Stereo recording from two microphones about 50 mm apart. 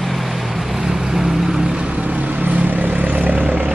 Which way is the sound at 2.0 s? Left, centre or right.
Right.